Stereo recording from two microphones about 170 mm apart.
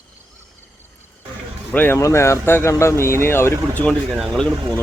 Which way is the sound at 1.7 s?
10° left (ahead or behind).